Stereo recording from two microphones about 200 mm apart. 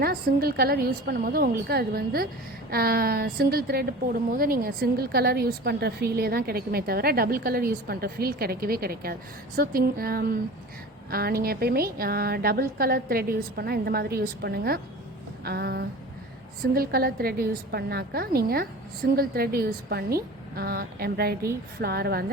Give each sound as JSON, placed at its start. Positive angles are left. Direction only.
{"t": 0.0, "sound": "a woman's voice", "side_deg": -50}